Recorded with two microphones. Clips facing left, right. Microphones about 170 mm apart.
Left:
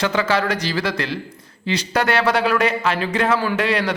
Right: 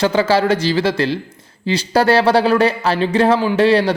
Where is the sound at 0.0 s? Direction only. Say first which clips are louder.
Right 5 dB; 30° right (ahead or behind).